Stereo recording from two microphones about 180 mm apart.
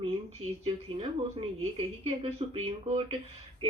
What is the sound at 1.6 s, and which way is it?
Speech, 35° right (ahead or behind).